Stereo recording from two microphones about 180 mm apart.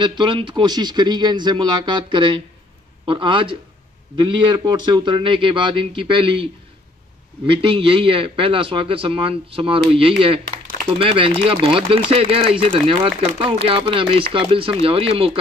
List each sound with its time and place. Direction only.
0.0 s a man's voice: 25° right (ahead or behind)